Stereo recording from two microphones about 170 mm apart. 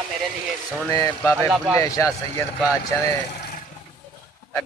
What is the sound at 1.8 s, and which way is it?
Speech, 20° left (ahead or behind).